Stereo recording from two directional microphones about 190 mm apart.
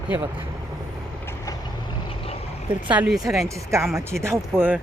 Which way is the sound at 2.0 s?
30° left (ahead or behind).